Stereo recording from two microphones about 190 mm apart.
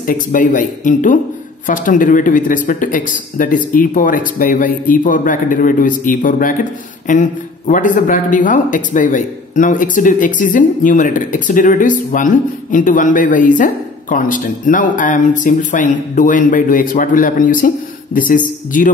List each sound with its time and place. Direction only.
0.0 s speech: 45° left (ahead or behind)